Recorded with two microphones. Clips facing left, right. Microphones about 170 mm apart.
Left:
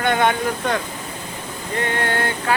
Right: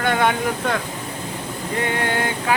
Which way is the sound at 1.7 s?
10° right (ahead or behind).